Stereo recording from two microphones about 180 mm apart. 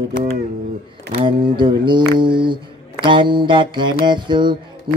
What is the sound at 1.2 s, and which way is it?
Mantra, 25° right (ahead or behind).